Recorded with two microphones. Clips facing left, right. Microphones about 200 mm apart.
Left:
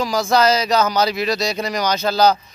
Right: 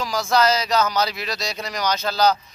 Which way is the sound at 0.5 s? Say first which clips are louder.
Left 3 dB; 5° left (ahead or behind).